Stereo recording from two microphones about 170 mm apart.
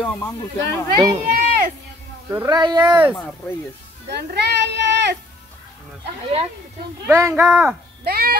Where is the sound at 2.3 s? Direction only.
15° right (ahead or behind).